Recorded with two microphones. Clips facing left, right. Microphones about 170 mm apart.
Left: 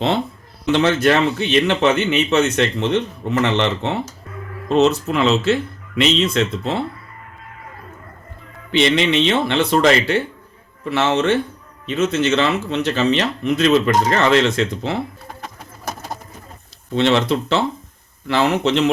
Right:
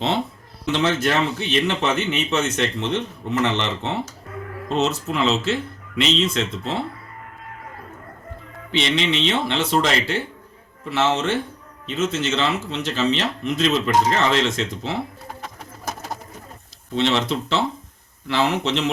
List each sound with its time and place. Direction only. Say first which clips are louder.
0.7 s a man's voice: left 5 dB; 70° left (ahead or behind)
8.7 s speech: left 6 dB; 55° left (ahead or behind)
16.9 s speech: left 5 dB; 60° left (ahead or behind)